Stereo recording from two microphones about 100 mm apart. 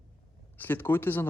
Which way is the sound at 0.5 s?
20° left (ahead or behind).